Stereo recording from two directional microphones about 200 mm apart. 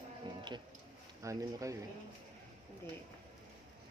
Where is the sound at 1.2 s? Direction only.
15° right (ahead or behind).